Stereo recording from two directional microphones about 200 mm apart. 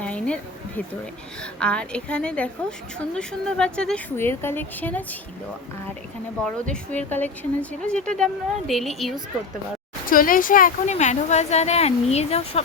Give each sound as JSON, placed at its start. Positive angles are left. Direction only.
{"t": 0.0, "sound": "a sound", "side_deg": 5}
{"t": 1.5, "sound": "a woman's voice", "side_deg": 5}
{"t": 6.7, "sound": "a woman's voice", "side_deg": 5}
{"t": 10.1, "sound": "speech", "side_deg": 45}